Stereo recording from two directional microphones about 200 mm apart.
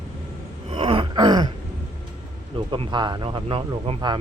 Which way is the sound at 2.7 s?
25° right (ahead or behind).